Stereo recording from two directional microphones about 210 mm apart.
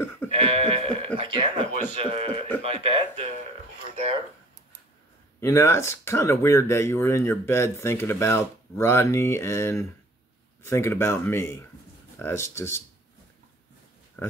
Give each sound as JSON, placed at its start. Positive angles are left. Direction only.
{"t": 0.4, "sound": "a sound", "side_deg": -25}
{"t": 1.1, "sound": "a man's voice", "side_deg": -25}
{"t": 5.4, "sound": "speech", "side_deg": 15}